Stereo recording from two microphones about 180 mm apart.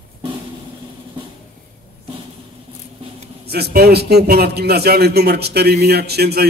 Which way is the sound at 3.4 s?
65° right (ahead or behind).